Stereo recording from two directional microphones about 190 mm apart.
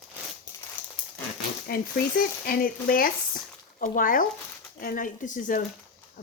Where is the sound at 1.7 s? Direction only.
50° left (ahead or behind).